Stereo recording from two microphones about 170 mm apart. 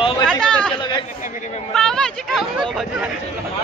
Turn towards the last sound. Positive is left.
turn(degrees=-5)  # may be behind; listen again after turning